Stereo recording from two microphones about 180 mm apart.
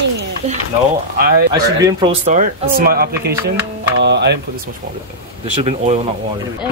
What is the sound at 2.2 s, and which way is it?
Speech, 50° right (ahead or behind).